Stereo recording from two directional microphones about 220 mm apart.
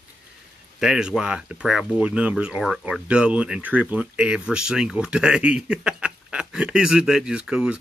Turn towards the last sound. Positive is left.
turn(degrees=-5)  # may be behind; listen again after turning